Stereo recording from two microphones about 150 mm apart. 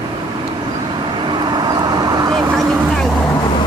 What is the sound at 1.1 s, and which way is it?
Vehicle, 30° right (ahead or behind).